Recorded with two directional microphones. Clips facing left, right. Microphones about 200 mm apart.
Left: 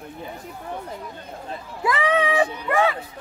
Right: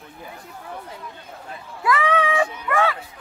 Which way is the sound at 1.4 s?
25° left (ahead or behind).